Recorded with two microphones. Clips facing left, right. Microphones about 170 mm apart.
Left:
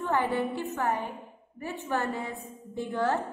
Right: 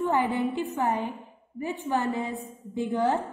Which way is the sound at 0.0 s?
15° right (ahead or behind).